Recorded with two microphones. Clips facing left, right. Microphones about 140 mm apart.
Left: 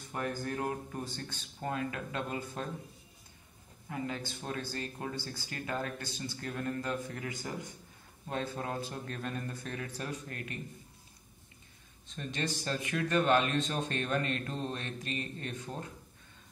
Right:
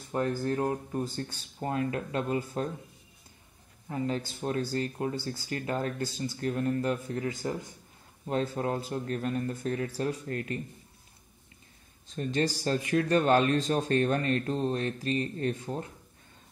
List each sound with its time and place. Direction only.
0.1 s a man's voice: 30° right (ahead or behind)
3.9 s a man's voice: 25° right (ahead or behind)
12.2 s speech: 35° right (ahead or behind)